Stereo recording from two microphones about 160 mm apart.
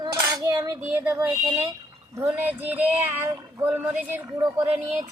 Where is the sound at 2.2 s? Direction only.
10° right (ahead or behind).